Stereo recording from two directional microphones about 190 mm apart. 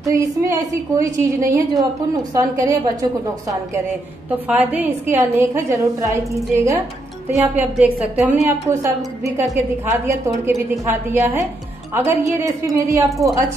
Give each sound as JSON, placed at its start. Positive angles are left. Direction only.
{"t": 0.0, "sound": "a woman's voice", "side_deg": -15}
{"t": 4.5, "sound": "a woman's voice", "side_deg": -10}
{"t": 8.6, "sound": "a woman's voice", "side_deg": -15}